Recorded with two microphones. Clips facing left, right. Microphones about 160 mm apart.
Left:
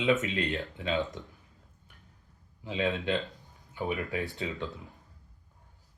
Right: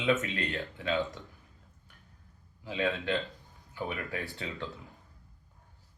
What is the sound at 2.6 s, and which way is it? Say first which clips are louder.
Speech: left 1 dB; 20° left (ahead or behind).